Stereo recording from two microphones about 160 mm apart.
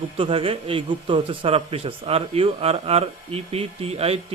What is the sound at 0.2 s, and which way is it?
Speech, 35° right (ahead or behind).